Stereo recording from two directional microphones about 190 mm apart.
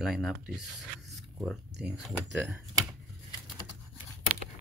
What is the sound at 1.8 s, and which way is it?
Speech, 5° right (ahead or behind).